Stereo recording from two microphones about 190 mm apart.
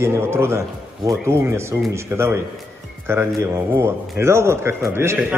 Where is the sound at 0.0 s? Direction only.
15° right (ahead or behind).